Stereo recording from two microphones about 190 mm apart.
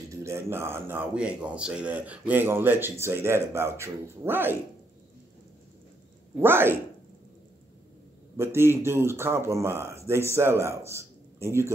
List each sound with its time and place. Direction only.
0.1 s a man's voice: 15° right (ahead or behind)
6.4 s a man's voice: 10° right (ahead or behind)
8.4 s a man's voice: 15° right (ahead or behind)
10.9 s a sound: 15° right (ahead or behind)